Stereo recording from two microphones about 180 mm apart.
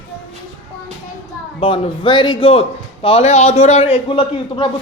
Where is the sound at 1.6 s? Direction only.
25° left (ahead or behind).